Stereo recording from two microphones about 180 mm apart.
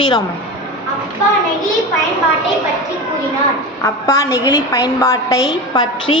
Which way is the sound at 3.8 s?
15° left (ahead or behind).